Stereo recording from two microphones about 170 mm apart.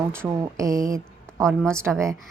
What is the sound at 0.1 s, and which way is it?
A woman's voice, 15° right (ahead or behind).